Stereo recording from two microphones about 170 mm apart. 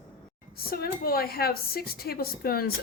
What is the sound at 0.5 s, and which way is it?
A woman's voice, 60° left (ahead or behind).